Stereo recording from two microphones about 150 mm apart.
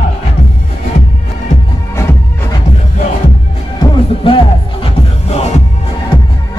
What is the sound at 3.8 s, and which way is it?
Music, 35° left (ahead or behind).